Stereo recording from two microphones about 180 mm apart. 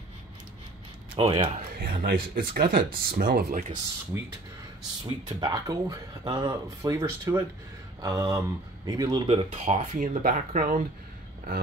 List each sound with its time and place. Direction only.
1.1 s speech: 30° right (ahead or behind)
1.8 s speech: 65° right (ahead or behind); by 3.7 s 45° right (ahead or behind)
4.1 s speech: 15° right (ahead or behind)
5.0 s speech: 25° right (ahead or behind)
9.9 s speech: 45° right (ahead or behind)